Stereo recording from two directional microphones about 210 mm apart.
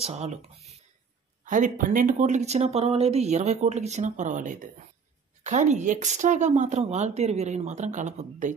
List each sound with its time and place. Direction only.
0.0 s speech: 30° right (ahead or behind)
1.4 s speech: 40° right (ahead or behind)